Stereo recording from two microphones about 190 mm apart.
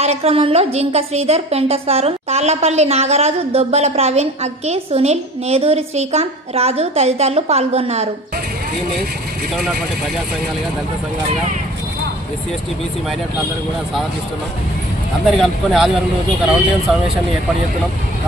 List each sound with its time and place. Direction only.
0.0 s a woman's voice: 35° right (ahead or behind)
15.2 s speech: centre (ahead or behind)